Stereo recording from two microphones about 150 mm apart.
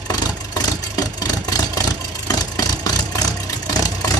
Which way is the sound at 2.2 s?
25° left (ahead or behind).